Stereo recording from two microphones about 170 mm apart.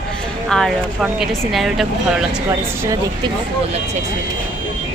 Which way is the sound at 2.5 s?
20° right (ahead or behind).